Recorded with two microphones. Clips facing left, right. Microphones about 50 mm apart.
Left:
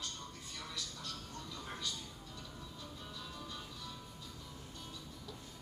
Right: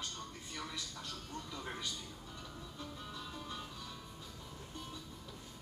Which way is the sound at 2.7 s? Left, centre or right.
Centre.